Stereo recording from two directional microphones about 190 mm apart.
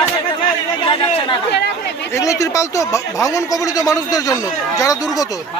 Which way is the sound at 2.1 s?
15° left (ahead or behind).